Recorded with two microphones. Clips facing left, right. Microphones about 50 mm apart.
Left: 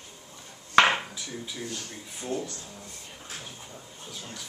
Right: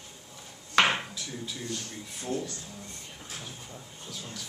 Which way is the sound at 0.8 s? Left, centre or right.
Centre.